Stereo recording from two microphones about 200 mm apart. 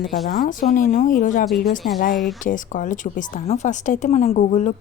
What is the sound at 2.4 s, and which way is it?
Speech, 40° left (ahead or behind).